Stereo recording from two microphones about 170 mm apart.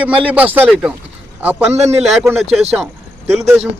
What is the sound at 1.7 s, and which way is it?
Speech, 40° right (ahead or behind).